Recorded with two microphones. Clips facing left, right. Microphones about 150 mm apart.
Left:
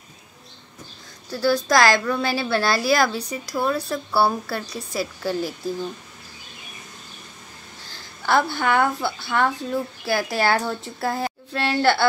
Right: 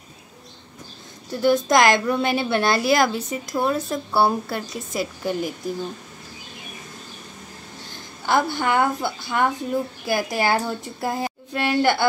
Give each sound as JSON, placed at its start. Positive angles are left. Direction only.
{"t": 1.3, "sound": "a woman's voice", "side_deg": -20}
{"t": 7.9, "sound": "a woman's voice", "side_deg": -15}